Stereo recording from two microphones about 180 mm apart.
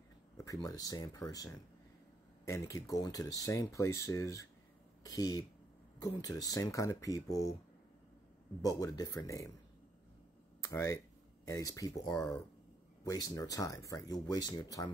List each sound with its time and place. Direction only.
0.4 s speech: 20° left (ahead or behind)
8.6 s speech: 20° left (ahead or behind)
10.6 s speech: 15° left (ahead or behind)